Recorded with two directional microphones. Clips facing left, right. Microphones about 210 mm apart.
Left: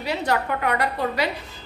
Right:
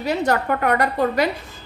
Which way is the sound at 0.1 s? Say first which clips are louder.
Right 3 dB; 45° right (ahead or behind).